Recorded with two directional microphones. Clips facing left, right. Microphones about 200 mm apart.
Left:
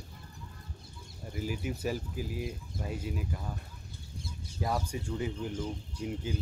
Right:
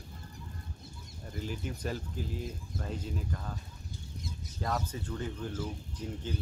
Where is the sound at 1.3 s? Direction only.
10° left (ahead or behind).